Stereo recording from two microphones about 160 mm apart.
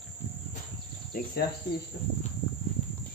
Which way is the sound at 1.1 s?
60° left (ahead or behind).